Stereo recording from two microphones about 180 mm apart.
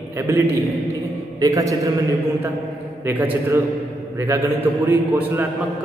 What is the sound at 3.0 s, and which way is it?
A man's voice, 10° right (ahead or behind).